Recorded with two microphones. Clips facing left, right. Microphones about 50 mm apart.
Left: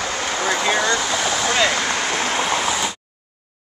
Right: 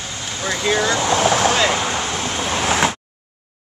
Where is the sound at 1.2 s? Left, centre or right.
Right.